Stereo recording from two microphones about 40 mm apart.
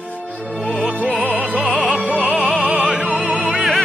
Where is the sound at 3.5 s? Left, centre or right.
Centre.